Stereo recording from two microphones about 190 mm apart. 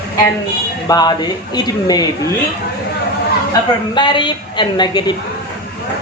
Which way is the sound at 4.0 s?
25° left (ahead or behind).